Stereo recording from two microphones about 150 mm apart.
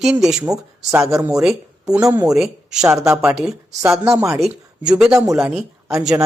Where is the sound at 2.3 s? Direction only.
5° right (ahead or behind).